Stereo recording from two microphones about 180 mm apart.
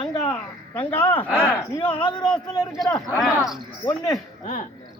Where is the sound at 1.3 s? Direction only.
10° right (ahead or behind).